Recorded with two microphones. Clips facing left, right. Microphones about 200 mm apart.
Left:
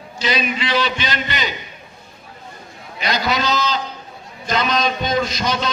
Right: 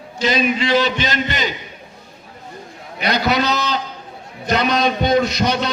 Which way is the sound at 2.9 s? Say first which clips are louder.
Right 3 dB; 60° right (ahead or behind).